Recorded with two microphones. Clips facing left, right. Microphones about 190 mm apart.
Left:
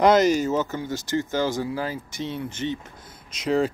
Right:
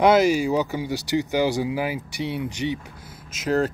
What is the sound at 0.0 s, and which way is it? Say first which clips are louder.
Speech: even; 5° right (ahead or behind).